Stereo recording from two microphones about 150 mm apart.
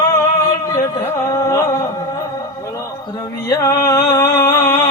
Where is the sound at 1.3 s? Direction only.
20° left (ahead or behind).